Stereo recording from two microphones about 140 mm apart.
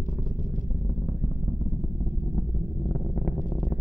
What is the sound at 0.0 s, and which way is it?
Vehicle, 70° left (ahead or behind).